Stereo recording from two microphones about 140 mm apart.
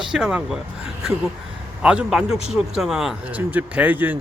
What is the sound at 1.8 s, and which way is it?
A man's voice, 5° right (ahead or behind).